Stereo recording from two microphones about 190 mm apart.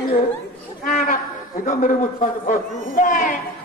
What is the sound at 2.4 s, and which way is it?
Speech, 40° left (ahead or behind).